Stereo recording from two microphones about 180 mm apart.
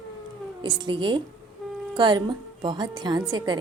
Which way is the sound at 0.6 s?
25° right (ahead or behind).